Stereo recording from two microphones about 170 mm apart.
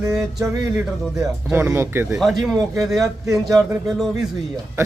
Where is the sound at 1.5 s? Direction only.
15° right (ahead or behind).